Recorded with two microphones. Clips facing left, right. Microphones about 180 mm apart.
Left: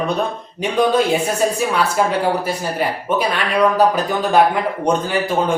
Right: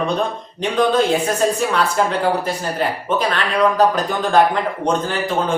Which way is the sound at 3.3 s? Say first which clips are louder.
Left 2 dB; 10° left (ahead or behind).